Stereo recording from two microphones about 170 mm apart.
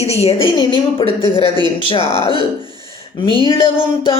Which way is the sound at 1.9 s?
35° left (ahead or behind).